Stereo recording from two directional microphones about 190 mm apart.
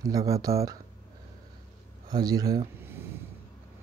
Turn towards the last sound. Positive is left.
turn(degrees=-15)  # may be behind; listen again after turning